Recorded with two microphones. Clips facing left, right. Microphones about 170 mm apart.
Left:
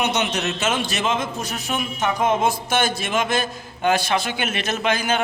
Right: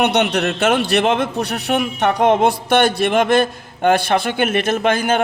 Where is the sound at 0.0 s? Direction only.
65° right (ahead or behind).